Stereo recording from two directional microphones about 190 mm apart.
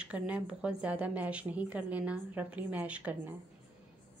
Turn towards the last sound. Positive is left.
turn(degrees=-10)  # may be behind; listen again after turning